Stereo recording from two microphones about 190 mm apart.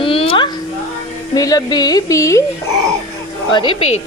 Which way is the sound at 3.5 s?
25° left (ahead or behind).